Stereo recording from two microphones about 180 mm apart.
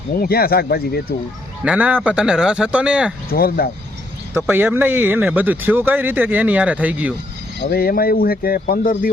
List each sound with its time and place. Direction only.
0.2 s speech: 55° left (ahead or behind)
1.6 s speech: 10° right (ahead or behind)
3.2 s speech: 55° left (ahead or behind)
4.4 s speech: 10° right (ahead or behind)
7.7 s speech: 55° left (ahead or behind)